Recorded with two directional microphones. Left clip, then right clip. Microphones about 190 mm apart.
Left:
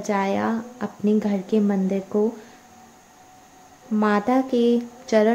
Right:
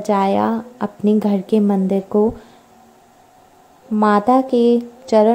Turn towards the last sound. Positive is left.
turn(degrees=-20)  # may be behind; listen again after turning